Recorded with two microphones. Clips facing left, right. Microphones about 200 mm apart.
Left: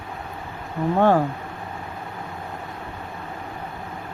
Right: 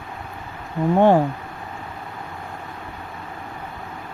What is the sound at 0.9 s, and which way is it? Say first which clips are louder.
Speech: right 3 dB; 15° right (ahead or behind).